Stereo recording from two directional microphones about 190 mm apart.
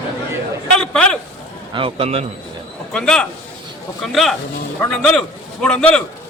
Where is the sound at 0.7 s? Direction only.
5° left (ahead or behind).